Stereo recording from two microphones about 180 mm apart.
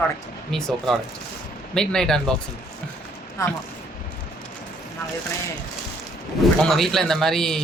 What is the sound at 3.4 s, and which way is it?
Speech, 20° left (ahead or behind).